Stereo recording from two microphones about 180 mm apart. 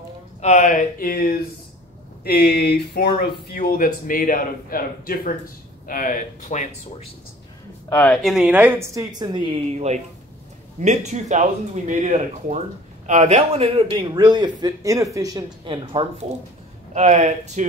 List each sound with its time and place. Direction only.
0.4 s speech: 40° left (ahead or behind)
7.9 s a woman's voice: 5° left (ahead or behind); by 16.3 s 30° right (ahead or behind)
16.9 s speech: 40° right (ahead or behind)